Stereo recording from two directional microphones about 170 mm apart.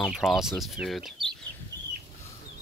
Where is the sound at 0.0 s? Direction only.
Centre (ahead or behind).